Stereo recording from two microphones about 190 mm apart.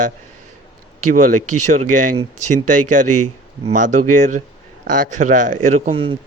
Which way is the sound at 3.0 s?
45° right (ahead or behind).